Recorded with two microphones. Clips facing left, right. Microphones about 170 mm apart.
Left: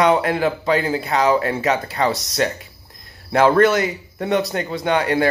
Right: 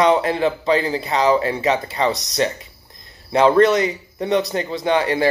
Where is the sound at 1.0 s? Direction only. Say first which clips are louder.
Even; centre (ahead or behind).